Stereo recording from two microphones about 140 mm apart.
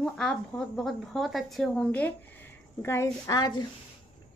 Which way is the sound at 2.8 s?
20° left (ahead or behind).